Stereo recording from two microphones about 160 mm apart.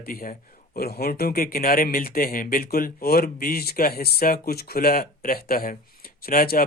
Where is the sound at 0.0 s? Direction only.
70° left (ahead or behind).